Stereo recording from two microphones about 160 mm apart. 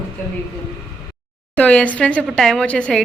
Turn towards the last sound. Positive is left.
turn(degrees=5)  # may be behind; listen again after turning